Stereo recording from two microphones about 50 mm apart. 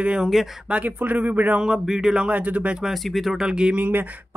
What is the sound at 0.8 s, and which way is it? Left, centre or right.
Speech, right.